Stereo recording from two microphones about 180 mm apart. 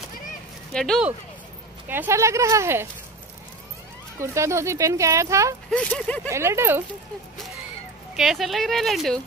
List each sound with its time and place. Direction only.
0.7 s speech: 5° left (ahead or behind)
1.9 s speech: 15° right (ahead or behind)
4.2 s speech: 15° right (ahead or behind)
5.7 s speech: 5° left (ahead or behind)
6.2 s speech: 15° right (ahead or behind)
8.2 s speech: centre (ahead or behind)